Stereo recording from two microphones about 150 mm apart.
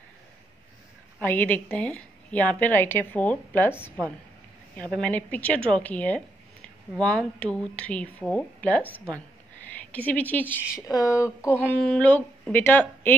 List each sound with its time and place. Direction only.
1.2 s a woman's voice: 10° left (ahead or behind)
4.7 s a woman's voice: 5° left (ahead or behind)
10.9 s a sound: 25° left (ahead or behind)
11.7 s a woman's voice: 5° left (ahead or behind)